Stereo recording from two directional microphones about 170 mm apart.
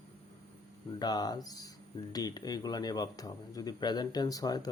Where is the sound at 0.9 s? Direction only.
25° left (ahead or behind).